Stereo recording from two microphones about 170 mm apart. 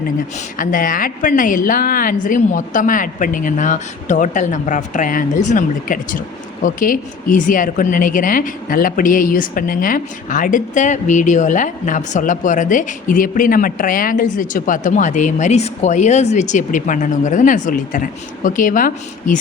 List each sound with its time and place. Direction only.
0.6 s a woman's voice: 55° left (ahead or behind)